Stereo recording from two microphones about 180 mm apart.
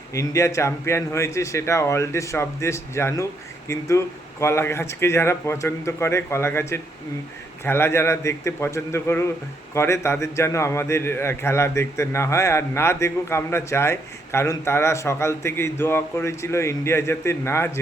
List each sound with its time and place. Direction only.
0.1 s a man's voice: 15° left (ahead or behind)